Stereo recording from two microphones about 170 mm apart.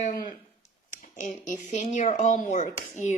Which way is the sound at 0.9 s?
50° left (ahead or behind).